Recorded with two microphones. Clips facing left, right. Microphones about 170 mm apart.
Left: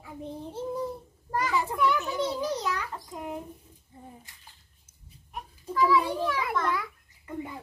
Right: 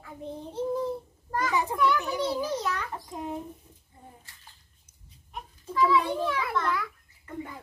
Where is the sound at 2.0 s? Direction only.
15° right (ahead or behind).